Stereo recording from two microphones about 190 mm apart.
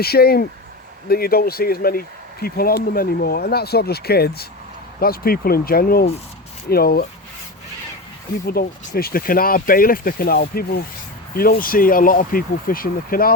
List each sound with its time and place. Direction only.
0.0 s speech: 55° left (ahead or behind)
8.4 s speech: 55° left (ahead or behind)